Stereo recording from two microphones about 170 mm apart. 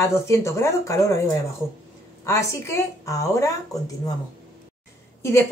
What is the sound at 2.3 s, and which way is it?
Speech, 15° left (ahead or behind).